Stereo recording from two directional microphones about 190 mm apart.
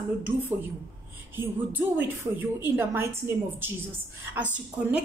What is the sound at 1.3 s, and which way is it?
Speech, 10° right (ahead or behind).